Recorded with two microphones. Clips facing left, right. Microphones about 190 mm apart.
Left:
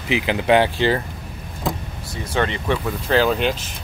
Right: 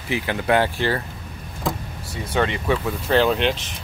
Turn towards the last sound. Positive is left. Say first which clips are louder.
# even
turn(degrees=5)  # may be behind; listen again after turning